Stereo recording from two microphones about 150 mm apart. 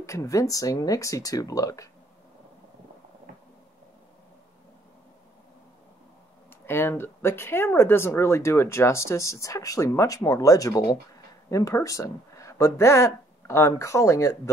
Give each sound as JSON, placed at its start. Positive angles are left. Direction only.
{"t": 0.0, "sound": "speech", "side_deg": 20}
{"t": 6.6, "sound": "speech", "side_deg": 15}